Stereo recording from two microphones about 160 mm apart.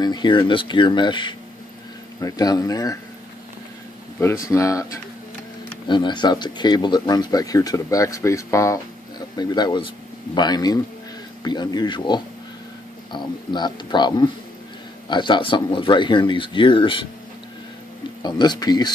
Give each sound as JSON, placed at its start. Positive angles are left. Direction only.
{"t": 0.0, "sound": "speech", "side_deg": 25}
{"t": 4.2, "sound": "speech", "side_deg": 20}
{"t": 18.2, "sound": "speech", "side_deg": 25}